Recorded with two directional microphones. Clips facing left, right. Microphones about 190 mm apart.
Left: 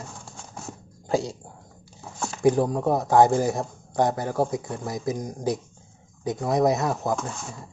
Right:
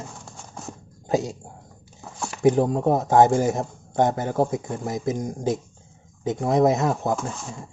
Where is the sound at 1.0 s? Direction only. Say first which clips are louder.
Right 1 dB; 20° right (ahead or behind).